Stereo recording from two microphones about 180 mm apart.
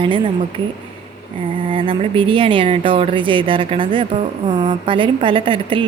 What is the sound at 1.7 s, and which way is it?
A woman's voice, 30° right (ahead or behind).